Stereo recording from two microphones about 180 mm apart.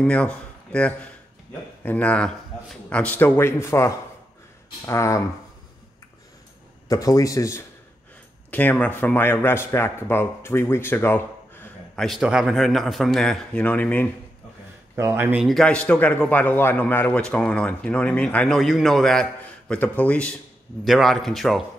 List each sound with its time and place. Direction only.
0.0 s a man's voice: 5° left (ahead or behind)
6.9 s a man's voice: 20° left (ahead or behind)
15.0 s a man's voice: 10° right (ahead or behind)